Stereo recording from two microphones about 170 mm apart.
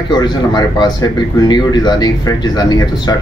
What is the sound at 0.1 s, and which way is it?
Speech, 25° left (ahead or behind).